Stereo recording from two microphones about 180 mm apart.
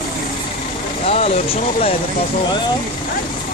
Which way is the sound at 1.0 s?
35° left (ahead or behind).